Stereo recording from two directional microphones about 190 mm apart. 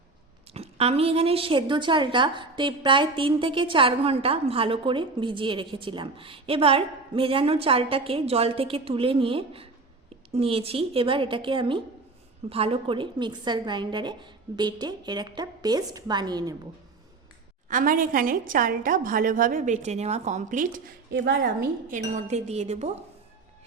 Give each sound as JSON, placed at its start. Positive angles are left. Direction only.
{"t": 0.5, "sound": "a woman's voice", "side_deg": -30}
{"t": 17.7, "sound": "a woman's voice", "side_deg": -45}